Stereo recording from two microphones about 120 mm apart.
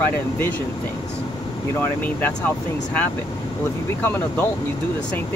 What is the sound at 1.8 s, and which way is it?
Speech, 15° left (ahead or behind).